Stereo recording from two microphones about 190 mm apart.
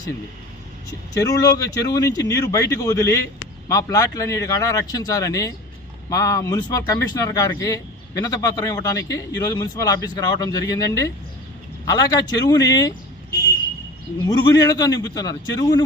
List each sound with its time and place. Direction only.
0.9 s speech: 20° left (ahead or behind)
14.3 s speech: 20° left (ahead or behind)